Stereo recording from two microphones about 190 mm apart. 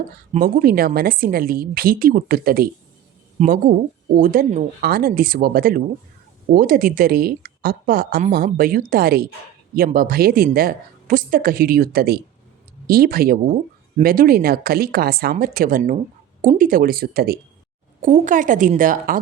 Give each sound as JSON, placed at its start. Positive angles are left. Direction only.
{"t": 0.3, "sound": "speech", "side_deg": -50}
{"t": 18.0, "sound": "speech", "side_deg": -40}